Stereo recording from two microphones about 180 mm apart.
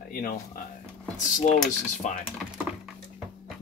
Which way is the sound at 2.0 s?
45° left (ahead or behind).